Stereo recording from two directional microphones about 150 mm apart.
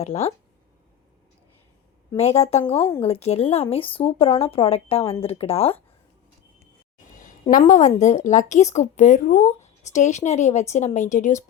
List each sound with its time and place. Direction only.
0.0 s a woman's voice: 45° left (ahead or behind)
2.1 s a woman's voice: 45° left (ahead or behind)
7.7 s a woman's voice: 55° left (ahead or behind)